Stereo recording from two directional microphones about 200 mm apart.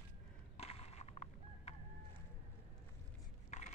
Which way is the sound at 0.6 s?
30° left (ahead or behind).